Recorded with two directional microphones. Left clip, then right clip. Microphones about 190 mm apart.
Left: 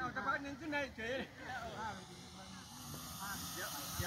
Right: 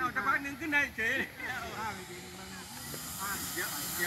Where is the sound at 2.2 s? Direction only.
Centre (ahead or behind).